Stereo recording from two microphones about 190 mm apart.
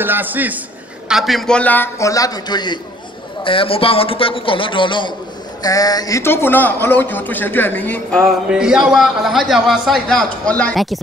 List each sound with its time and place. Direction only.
0.0 s a man's voice: 10° right (ahead or behind)